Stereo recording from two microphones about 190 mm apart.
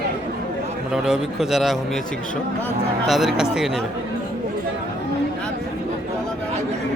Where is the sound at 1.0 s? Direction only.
Centre (ahead or behind).